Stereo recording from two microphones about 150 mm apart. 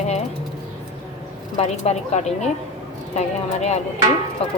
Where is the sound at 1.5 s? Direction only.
50° left (ahead or behind).